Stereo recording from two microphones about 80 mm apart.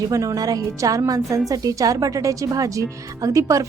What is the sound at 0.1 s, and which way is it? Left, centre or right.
A woman's voice, right.